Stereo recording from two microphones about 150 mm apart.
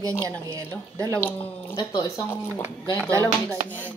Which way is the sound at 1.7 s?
30° left (ahead or behind).